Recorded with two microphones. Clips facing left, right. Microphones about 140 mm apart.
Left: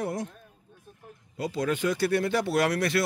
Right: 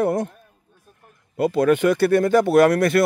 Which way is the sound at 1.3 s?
60° right (ahead or behind).